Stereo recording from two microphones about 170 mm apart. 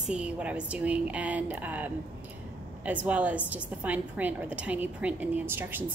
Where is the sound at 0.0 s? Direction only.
5° right (ahead or behind).